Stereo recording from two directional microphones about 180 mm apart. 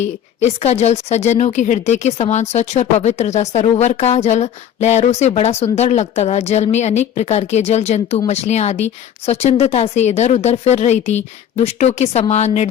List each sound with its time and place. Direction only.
0.0 s speech: 35° left (ahead or behind)